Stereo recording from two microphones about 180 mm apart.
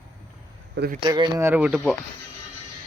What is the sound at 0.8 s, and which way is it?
Speech, 55° right (ahead or behind).